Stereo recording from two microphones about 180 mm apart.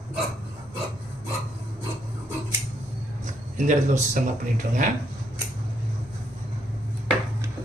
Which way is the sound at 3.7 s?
45° right (ahead or behind).